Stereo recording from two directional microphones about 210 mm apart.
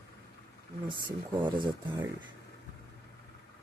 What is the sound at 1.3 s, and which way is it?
Speech, 20° right (ahead or behind).